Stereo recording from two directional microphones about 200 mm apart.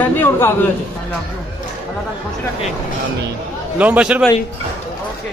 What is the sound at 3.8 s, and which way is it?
Speech, 5° right (ahead or behind).